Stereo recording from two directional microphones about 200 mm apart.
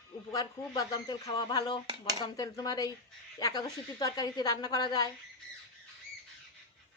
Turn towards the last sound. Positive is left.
turn(degrees=20)  # may be behind; listen again after turning